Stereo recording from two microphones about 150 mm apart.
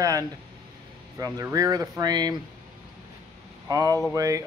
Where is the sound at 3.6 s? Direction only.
25° right (ahead or behind).